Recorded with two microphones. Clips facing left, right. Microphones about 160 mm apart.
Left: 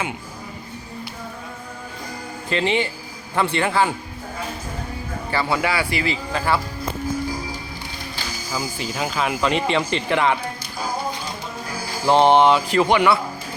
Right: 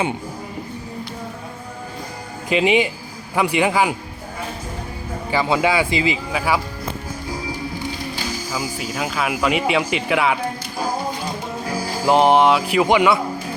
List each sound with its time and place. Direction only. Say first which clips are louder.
2.5 s music: right 4 dB; 15° right (ahead or behind)
5.3 s a man's voice: right 4 dB; 15° right (ahead or behind)
6.3 s music: left 1 dB; 10° right (ahead or behind)
8.5 s speech: left 1 dB; centre (ahead or behind)
12.0 s music: even; 5° right (ahead or behind)